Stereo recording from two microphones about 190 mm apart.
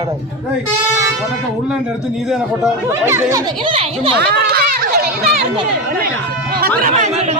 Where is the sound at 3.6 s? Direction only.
30° right (ahead or behind).